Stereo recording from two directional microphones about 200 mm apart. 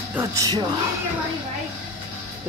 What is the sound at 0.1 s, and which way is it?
Speech, 15° right (ahead or behind).